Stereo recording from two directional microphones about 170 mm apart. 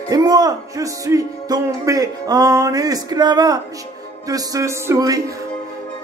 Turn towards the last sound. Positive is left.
turn(degrees=-20)  # may be behind; listen again after turning